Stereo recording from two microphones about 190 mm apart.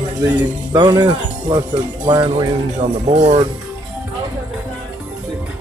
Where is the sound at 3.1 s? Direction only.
35° right (ahead or behind).